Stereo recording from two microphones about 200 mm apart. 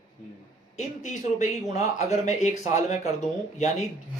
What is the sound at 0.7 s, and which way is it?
Speech, 35° left (ahead or behind).